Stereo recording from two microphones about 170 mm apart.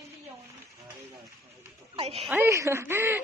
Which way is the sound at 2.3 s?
15° right (ahead or behind).